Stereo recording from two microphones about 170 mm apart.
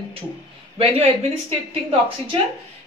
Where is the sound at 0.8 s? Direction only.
35° right (ahead or behind).